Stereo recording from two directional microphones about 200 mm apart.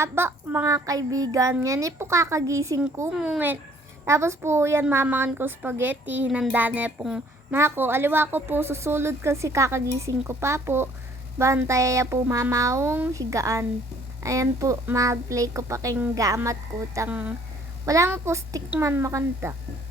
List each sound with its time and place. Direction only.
0.0 s a woman's voice: 10° right (ahead or behind)